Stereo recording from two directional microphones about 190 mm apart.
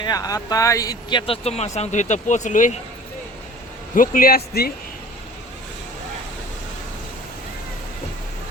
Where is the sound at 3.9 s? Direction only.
45° left (ahead or behind).